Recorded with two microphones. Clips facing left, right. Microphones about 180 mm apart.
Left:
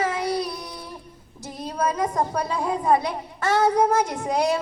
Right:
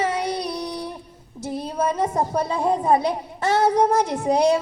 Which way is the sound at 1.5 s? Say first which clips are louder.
Right 2 dB; 25° right (ahead or behind).